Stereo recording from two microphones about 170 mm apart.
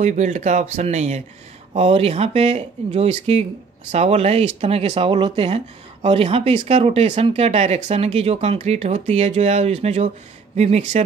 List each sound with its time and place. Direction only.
0.0 s speech: 45° right (ahead or behind)